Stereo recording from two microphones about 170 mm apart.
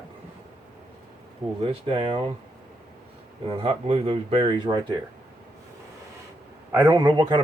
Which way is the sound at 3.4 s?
35° right (ahead or behind).